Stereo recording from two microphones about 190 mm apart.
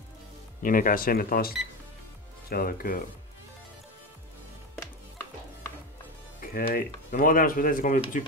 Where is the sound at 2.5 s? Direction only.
50° left (ahead or behind).